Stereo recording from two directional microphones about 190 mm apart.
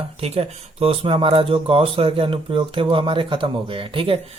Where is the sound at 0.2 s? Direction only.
30° right (ahead or behind).